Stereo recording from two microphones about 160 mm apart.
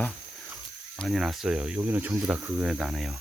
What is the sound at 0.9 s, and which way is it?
Speech, centre (ahead or behind).